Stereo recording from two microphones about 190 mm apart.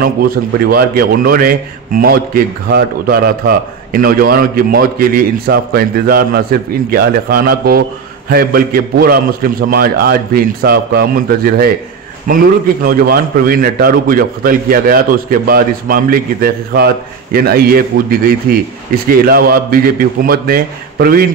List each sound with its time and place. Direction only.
0.0 s a man's voice: 50° right (ahead or behind)